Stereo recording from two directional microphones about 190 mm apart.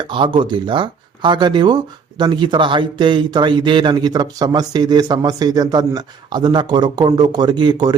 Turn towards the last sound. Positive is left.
turn(degrees=-20)  # may be behind; listen again after turning